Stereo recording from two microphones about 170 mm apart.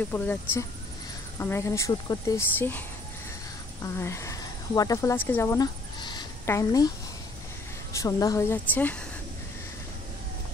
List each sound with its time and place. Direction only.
0.1 s speech: 10° left (ahead or behind)
3.8 s speech: 15° left (ahead or behind)
5.9 s a sound: 25° left (ahead or behind)
7.9 s speech: 20° left (ahead or behind)